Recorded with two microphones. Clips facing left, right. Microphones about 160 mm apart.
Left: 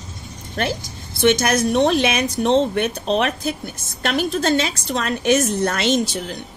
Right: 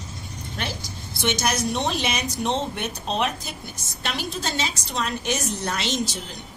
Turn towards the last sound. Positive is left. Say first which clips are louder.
# left 7 dB
turn(degrees=55)  # may be behind; listen again after turning